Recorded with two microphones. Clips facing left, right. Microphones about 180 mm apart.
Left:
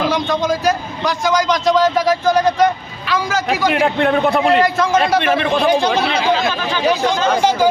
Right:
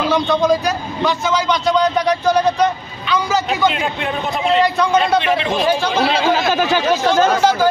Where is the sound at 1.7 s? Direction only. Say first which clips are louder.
Left 1 dB; centre (ahead or behind).